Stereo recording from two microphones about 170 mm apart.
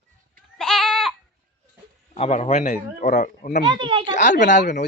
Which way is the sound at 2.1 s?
35° left (ahead or behind).